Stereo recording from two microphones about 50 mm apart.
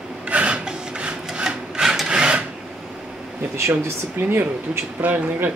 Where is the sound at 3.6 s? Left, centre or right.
Right.